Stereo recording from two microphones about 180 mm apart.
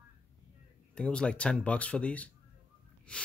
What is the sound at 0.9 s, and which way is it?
Speech, 5° left (ahead or behind).